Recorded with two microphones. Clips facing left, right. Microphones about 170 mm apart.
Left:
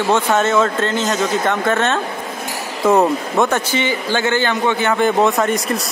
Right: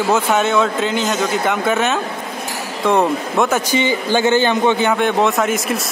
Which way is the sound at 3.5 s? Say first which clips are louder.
Right 2 dB; 10° right (ahead or behind).